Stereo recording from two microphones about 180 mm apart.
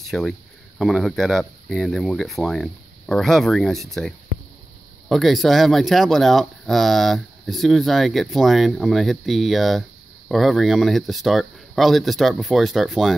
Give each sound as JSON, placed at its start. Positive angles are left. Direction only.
{"t": 0.0, "sound": "speech", "side_deg": 0}